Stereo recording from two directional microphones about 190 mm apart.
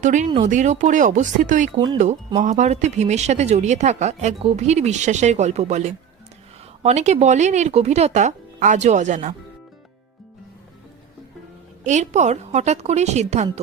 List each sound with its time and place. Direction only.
0.0 s speech: 40° right (ahead or behind)
11.8 s speech: 40° right (ahead or behind)